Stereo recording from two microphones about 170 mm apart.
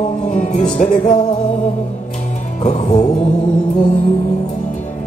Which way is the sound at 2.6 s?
45° left (ahead or behind).